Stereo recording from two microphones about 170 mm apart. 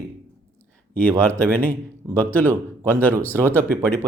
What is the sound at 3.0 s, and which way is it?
Speech, 10° left (ahead or behind).